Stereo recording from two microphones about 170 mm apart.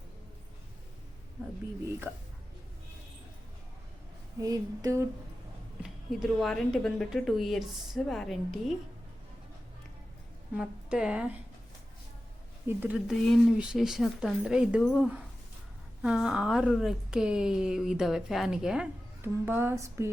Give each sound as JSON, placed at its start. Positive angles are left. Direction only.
{"t": 4.4, "sound": "a sound", "side_deg": -20}
{"t": 5.8, "sound": "a woman's voice", "side_deg": 0}
{"t": 10.6, "sound": "a woman's voice", "side_deg": -5}
{"t": 12.6, "sound": "a woman's voice", "side_deg": -10}